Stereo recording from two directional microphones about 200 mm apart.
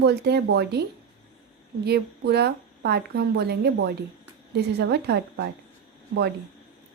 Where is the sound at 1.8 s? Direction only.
55° right (ahead or behind).